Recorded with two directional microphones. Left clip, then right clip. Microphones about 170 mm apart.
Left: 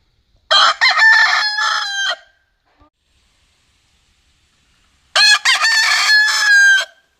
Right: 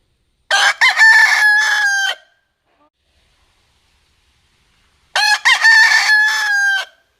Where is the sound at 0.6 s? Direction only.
30° right (ahead or behind).